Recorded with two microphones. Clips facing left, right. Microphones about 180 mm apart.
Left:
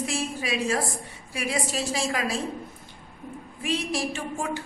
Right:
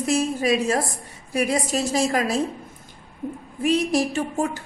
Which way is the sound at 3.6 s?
40° right (ahead or behind).